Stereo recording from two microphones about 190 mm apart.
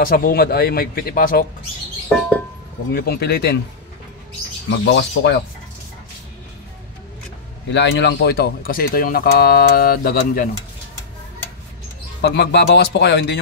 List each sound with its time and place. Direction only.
0.0 s speech: 50° left (ahead or behind)
2.9 s speech: 55° left (ahead or behind)
4.6 s speech: 70° left (ahead or behind)
7.7 s speech: 70° left (ahead or behind); by 10.5 s 50° left (ahead or behind)
12.2 s speech: 65° left (ahead or behind)